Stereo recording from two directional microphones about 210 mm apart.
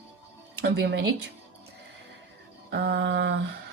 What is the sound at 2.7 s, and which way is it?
Speech, 55° right (ahead or behind).